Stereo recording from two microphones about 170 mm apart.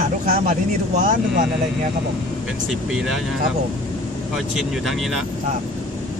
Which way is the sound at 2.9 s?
Centre (ahead or behind).